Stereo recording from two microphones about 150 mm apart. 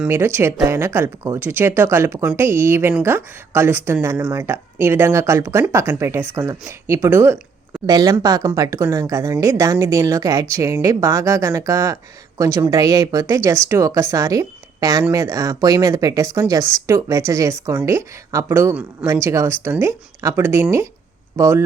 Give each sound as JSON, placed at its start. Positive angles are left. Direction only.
{"t": 0.1, "sound": "speech", "side_deg": -15}